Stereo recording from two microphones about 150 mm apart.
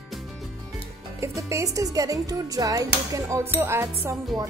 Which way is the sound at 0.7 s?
20° right (ahead or behind).